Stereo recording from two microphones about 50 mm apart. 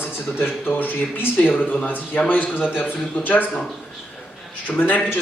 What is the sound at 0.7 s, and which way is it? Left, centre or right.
Speech, left.